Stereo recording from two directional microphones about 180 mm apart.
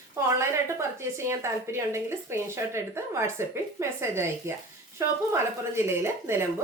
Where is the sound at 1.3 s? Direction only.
15° right (ahead or behind).